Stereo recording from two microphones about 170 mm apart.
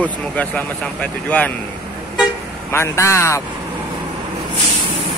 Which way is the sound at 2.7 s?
15° left (ahead or behind).